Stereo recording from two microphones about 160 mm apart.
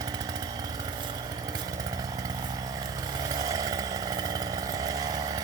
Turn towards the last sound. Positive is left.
turn(degrees=-25)  # may be behind; listen again after turning